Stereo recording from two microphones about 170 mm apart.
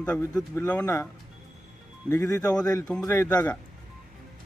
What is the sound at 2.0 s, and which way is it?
Speech, 20° left (ahead or behind).